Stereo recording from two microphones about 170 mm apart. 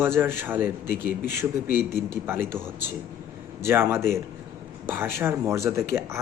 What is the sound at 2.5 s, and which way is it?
Speech, 10° right (ahead or behind).